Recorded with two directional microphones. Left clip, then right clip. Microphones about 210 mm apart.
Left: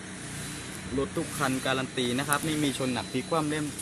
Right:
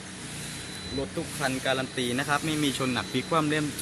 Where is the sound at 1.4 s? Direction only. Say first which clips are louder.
Right 1 dB; 10° left (ahead or behind).